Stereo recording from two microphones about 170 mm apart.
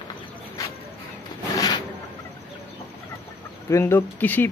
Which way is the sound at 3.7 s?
15° left (ahead or behind).